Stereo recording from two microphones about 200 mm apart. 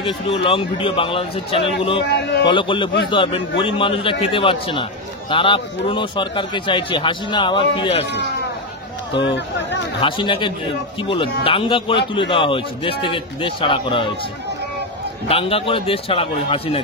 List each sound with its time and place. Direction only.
0.0 s a man's voice: 25° left (ahead or behind)
2.0 s speech: 55° left (ahead or behind)
2.4 s a man's voice: 25° left (ahead or behind)
9.2 s speech: 65° left (ahead or behind)
9.9 s a man's voice: 25° left (ahead or behind)
15.2 s a man's voice: 30° left (ahead or behind)